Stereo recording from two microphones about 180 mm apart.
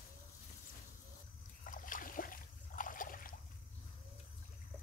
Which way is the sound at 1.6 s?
45° left (ahead or behind).